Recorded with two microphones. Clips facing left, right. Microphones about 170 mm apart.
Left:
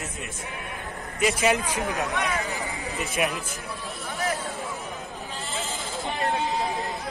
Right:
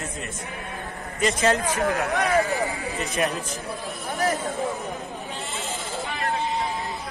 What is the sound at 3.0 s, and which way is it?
Speech, 5° left (ahead or behind).